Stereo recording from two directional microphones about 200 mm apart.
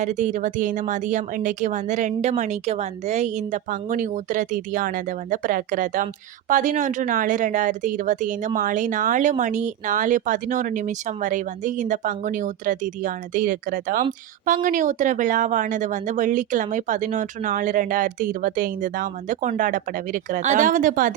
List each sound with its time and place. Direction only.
0.0 s speech: 35° right (ahead or behind)